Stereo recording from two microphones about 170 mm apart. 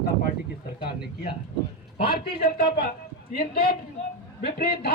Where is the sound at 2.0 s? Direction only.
65° left (ahead or behind).